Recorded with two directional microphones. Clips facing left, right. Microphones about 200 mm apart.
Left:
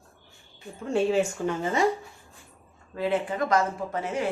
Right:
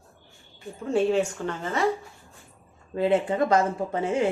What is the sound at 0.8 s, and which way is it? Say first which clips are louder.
Speech: right 1 dB; centre (ahead or behind).